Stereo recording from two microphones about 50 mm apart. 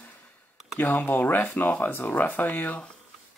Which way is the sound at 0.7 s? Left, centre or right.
Left.